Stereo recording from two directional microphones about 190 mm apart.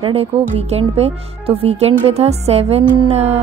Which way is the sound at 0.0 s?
30° right (ahead or behind).